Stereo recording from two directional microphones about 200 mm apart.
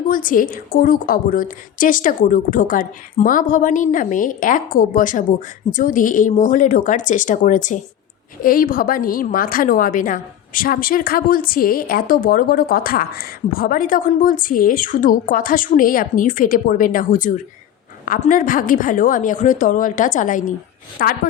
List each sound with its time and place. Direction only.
0.0 s a woman's voice: 45° left (ahead or behind)